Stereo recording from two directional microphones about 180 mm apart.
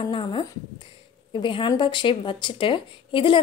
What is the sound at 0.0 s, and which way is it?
A woman's voice, 25° left (ahead or behind).